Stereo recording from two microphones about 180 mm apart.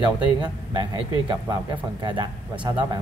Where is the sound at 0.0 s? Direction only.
25° right (ahead or behind).